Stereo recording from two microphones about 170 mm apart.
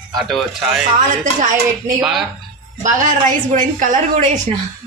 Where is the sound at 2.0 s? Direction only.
Centre (ahead or behind).